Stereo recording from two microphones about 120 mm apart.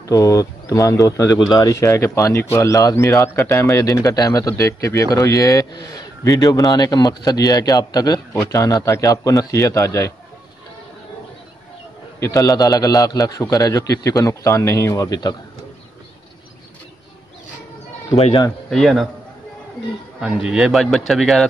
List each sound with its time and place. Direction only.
0.0 s speech: 25° left (ahead or behind)
12.2 s speech: 30° left (ahead or behind)
18.1 s speech: 60° left (ahead or behind)
18.7 s speech: centre (ahead or behind)
20.2 s speech: 5° right (ahead or behind)